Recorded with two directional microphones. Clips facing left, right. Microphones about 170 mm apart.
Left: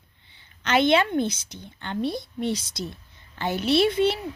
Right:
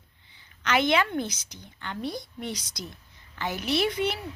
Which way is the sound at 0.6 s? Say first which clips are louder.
Left 4 dB; 30° left (ahead or behind).